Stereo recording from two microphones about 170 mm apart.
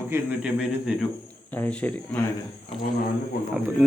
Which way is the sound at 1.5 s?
10° left (ahead or behind).